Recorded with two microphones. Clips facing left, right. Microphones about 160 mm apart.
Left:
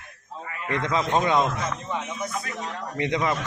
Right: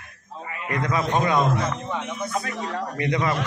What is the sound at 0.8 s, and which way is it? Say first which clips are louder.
Speech: right 1 dB; 25° left (ahead or behind).